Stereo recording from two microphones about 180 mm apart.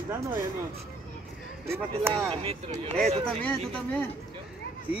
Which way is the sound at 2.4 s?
35° right (ahead or behind).